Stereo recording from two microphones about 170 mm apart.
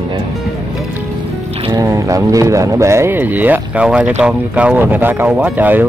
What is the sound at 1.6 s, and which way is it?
Speech, 20° right (ahead or behind).